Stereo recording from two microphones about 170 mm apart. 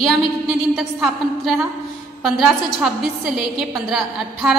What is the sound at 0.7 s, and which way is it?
A woman's voice, centre (ahead or behind).